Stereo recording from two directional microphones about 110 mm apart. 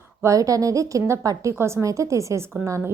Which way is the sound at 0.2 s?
30° right (ahead or behind).